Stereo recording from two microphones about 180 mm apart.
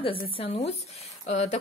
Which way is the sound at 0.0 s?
30° left (ahead or behind).